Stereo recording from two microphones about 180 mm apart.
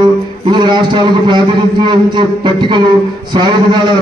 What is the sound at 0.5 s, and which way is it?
A man's voice, 25° right (ahead or behind).